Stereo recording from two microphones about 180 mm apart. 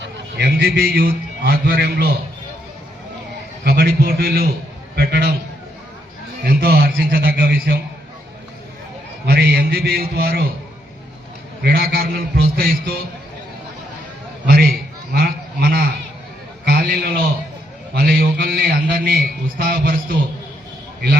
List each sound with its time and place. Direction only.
0.0 s a man's voice: 60° right (ahead or behind)
3.6 s a man's voice: 60° right (ahead or behind)
6.4 s a man's voice: 60° right (ahead or behind)
9.2 s a man's voice: 60° right (ahead or behind)
11.6 s a man's voice: 60° right (ahead or behind)
14.4 s honk: 55° right (ahead or behind)
16.6 s a sound: 55° right (ahead or behind)
17.9 s a man's voice: 60° right (ahead or behind)